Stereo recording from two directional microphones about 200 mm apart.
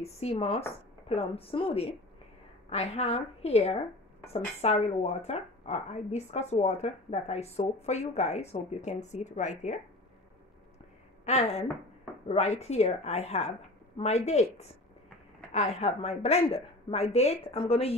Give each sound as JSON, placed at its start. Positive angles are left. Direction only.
{"t": 0.0, "sound": "speech", "side_deg": 30}
{"t": 11.2, "sound": "speech", "side_deg": 35}